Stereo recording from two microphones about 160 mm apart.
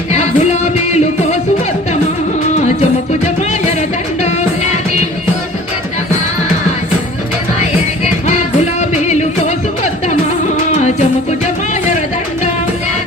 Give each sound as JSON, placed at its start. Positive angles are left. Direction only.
{"t": 0.1, "sound": "music", "side_deg": 45}
{"t": 4.2, "sound": "music", "side_deg": 45}
{"t": 8.3, "sound": "music", "side_deg": 45}